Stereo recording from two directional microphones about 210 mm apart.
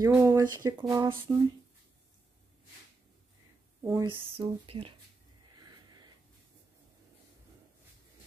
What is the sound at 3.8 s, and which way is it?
Speech, 15° right (ahead or behind).